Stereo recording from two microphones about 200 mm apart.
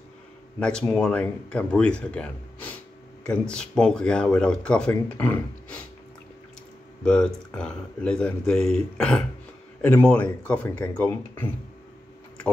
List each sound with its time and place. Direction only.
0.6 s speech: 5° left (ahead or behind)
7.1 s speech: 5° left (ahead or behind)